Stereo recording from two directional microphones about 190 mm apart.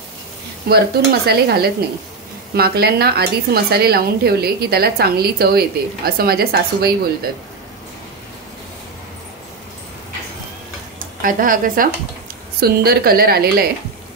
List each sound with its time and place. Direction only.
0.7 s a woman's voice: 55° right (ahead or behind)
11.0 s a woman's voice: 45° right (ahead or behind)